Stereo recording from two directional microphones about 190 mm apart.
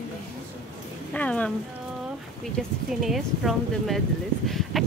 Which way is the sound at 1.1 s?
5° left (ahead or behind).